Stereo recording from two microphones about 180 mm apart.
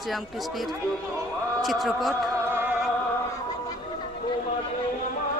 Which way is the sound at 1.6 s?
Centre (ahead or behind).